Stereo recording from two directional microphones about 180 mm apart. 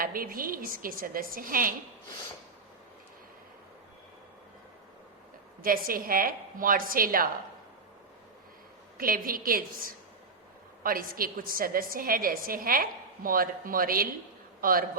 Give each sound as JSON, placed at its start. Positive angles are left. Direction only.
{"t": 0.0, "sound": "a woman's voice", "side_deg": -55}
{"t": 5.6, "sound": "a woman's voice", "side_deg": -50}
{"t": 9.0, "sound": "a woman's voice", "side_deg": -50}